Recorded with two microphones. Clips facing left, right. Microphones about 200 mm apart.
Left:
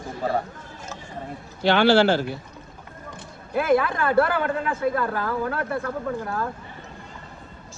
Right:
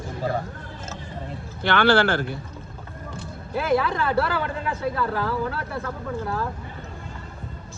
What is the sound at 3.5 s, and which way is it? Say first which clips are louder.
Speech: left 2 dB; 50° left (ahead or behind).